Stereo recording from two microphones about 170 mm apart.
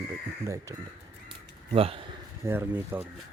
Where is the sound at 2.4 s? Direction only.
15° right (ahead or behind).